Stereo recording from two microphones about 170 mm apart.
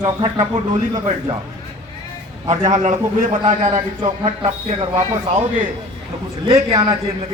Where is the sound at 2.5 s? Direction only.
45° right (ahead or behind).